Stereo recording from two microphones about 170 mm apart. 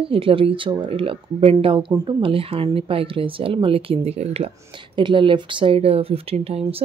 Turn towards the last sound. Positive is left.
turn(degrees=-35)  # may be behind; listen again after turning